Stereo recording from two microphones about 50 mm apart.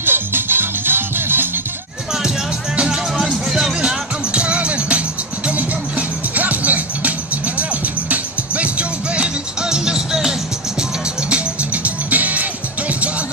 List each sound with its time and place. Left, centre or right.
0.0 s music: right
3.3 s music: centre
3.8 s music: right
10.8 s music: right